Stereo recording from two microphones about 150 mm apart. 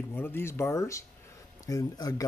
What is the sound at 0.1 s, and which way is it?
Speech, 15° left (ahead or behind).